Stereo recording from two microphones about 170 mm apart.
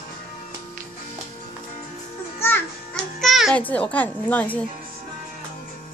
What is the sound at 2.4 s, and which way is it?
Music, 10° left (ahead or behind).